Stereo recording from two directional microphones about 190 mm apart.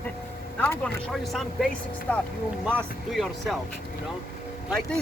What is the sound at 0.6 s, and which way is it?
Speech, 10° left (ahead or behind).